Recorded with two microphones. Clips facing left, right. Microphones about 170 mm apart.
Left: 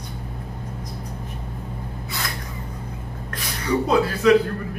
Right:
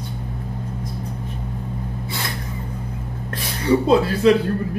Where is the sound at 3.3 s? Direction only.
30° right (ahead or behind).